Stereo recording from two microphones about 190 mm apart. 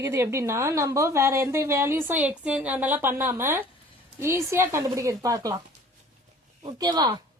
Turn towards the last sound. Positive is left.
turn(degrees=-20)  # may be behind; listen again after turning